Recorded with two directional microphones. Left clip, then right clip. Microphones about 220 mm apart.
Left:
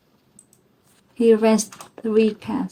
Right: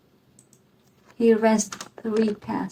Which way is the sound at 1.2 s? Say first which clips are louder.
Left 3 dB; 40° left (ahead or behind).